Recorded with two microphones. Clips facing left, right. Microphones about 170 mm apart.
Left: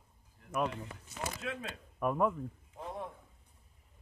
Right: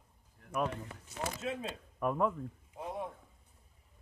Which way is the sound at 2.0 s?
5° left (ahead or behind).